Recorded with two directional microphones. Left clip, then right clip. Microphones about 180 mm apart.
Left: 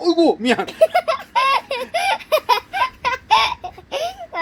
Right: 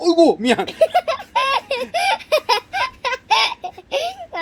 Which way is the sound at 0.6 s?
10° right (ahead or behind).